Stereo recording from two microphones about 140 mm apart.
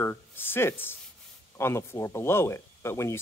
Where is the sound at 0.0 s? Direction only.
15° left (ahead or behind).